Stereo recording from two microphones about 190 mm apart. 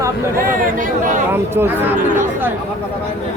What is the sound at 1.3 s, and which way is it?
Speech, 10° right (ahead or behind).